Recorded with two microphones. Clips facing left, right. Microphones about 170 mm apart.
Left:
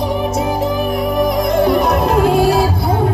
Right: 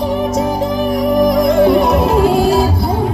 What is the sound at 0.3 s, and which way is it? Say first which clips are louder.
Music: right 1 dB; 5° left (ahead or behind).